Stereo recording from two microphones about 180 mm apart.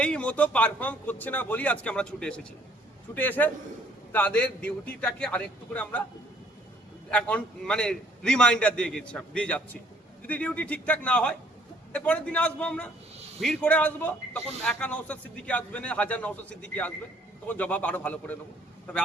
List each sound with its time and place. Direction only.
0.0 s a man's voice: 5° left (ahead or behind)
7.1 s a man's voice: 5° left (ahead or behind)